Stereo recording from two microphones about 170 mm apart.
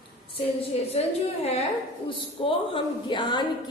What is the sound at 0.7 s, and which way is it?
A woman's voice, 35° left (ahead or behind).